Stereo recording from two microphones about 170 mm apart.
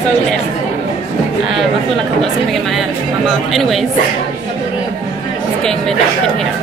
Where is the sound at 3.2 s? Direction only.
Centre (ahead or behind).